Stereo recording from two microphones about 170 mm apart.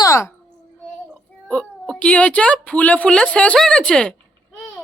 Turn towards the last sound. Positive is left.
turn(degrees=5)  # may be behind; listen again after turning